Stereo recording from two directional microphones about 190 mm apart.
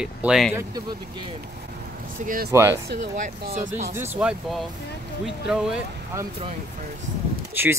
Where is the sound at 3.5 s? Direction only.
40° right (ahead or behind).